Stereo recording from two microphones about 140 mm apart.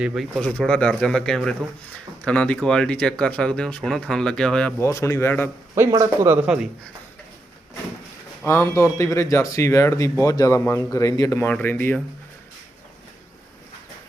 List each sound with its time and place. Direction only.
0.0 s speech: 5° right (ahead or behind)
4.8 s speech: 20° left (ahead or behind)
5.7 s speech: 20° right (ahead or behind)
8.4 s speech: 20° left (ahead or behind)